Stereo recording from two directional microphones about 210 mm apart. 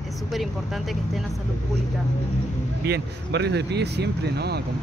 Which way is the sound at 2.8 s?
50° right (ahead or behind).